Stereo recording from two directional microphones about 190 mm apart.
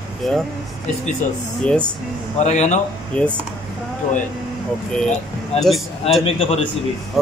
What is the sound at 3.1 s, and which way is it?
Speech, 5° left (ahead or behind).